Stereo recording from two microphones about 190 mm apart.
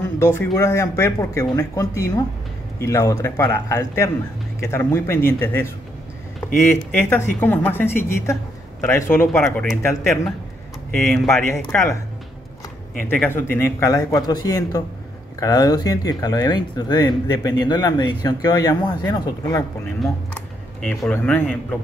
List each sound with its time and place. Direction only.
0.0 s speech: 10° left (ahead or behind)
11.5 s speech: 15° left (ahead or behind)
13.2 s speech: 10° left (ahead or behind)
20.0 s speech: 5° left (ahead or behind)